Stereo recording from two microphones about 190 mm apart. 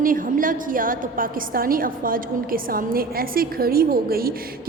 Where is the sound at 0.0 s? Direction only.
45° right (ahead or behind).